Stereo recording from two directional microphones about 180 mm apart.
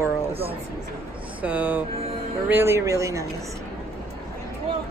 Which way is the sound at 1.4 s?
10° right (ahead or behind).